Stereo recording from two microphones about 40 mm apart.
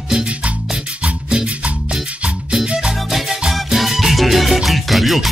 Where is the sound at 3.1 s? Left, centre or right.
Centre.